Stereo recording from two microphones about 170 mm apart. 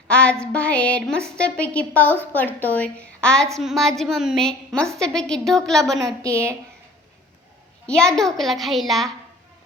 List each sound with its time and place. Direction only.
0.1 s a woman's voice: 5° left (ahead or behind)
6.2 s a woman's voice: 15° right (ahead or behind)
7.9 s a woman's voice: 5° left (ahead or behind)